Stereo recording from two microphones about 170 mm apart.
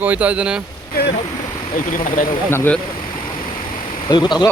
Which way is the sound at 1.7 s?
55° left (ahead or behind).